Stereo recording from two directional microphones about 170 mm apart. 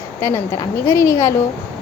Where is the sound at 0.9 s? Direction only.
15° left (ahead or behind).